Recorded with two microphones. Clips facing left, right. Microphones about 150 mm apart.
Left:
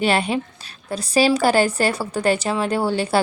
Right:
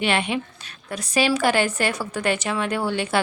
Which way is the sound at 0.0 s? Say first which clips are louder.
Left 3 dB; 35° left (ahead or behind).